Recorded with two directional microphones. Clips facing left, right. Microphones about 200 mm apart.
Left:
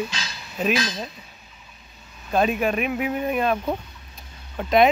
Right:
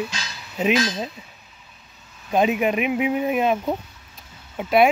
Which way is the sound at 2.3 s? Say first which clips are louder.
Right 2 dB; 20° right (ahead or behind).